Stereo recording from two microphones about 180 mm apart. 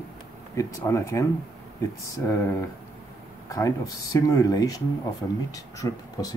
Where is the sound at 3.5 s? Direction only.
20° left (ahead or behind).